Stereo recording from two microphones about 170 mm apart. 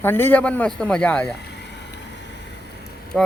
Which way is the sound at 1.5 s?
80° left.